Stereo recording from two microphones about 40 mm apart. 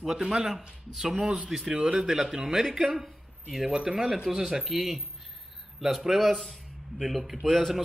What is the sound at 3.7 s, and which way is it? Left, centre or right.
Speech, right.